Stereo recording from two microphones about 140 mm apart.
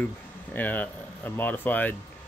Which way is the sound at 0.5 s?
10° left (ahead or behind).